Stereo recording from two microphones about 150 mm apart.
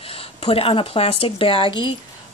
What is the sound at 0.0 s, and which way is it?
Speech, 40° left (ahead or behind).